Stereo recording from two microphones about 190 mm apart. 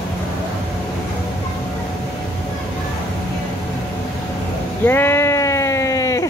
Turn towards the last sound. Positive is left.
turn(degrees=15)  # may be behind; listen again after turning